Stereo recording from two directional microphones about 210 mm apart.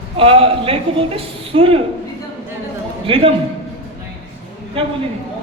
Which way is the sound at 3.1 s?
25° right (ahead or behind).